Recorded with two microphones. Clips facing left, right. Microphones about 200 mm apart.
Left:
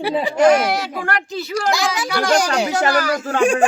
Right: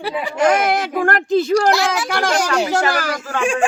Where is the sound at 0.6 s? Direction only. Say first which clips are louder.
Right 4 dB; 50° right (ahead or behind).